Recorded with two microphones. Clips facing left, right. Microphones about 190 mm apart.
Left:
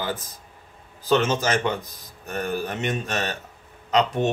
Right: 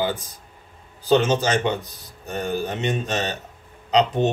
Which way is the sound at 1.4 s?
15° right (ahead or behind).